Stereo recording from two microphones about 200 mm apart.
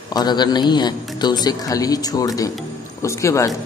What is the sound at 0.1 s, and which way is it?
A man's voice, 20° left (ahead or behind).